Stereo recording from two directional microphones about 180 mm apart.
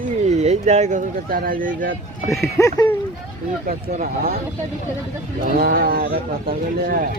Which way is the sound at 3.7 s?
50° right (ahead or behind).